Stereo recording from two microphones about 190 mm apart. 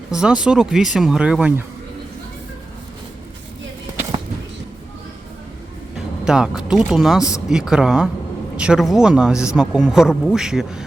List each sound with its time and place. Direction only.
0.1 s speech: 5° right (ahead or behind)
6.2 s speech: 5° right (ahead or behind)
7.2 s speech: 15° left (ahead or behind)
7.4 s speech: 5° right (ahead or behind)